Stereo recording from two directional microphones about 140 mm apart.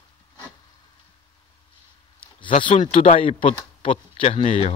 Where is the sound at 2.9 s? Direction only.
45° left (ahead or behind).